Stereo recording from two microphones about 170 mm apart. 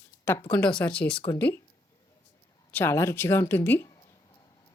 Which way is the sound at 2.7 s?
10° left (ahead or behind).